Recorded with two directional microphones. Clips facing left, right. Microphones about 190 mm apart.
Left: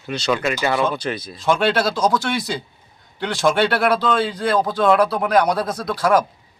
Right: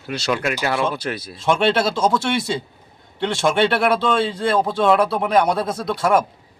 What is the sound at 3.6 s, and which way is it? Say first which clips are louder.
Speech: right 2 dB; centre (ahead or behind).